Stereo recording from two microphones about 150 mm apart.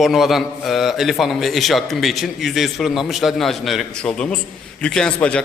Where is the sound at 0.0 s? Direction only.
Centre (ahead or behind).